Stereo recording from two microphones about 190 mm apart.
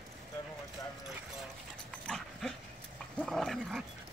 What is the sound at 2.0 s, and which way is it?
Dog, 5° left (ahead or behind).